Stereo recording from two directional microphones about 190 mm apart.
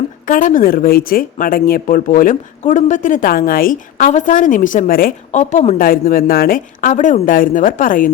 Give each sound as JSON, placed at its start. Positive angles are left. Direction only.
{"t": 0.3, "sound": "a woman's voice", "side_deg": 45}